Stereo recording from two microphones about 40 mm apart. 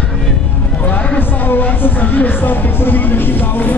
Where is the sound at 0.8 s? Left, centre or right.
Left.